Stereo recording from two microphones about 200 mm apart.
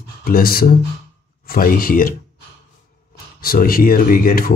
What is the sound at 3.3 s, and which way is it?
Speech, 45° left (ahead or behind).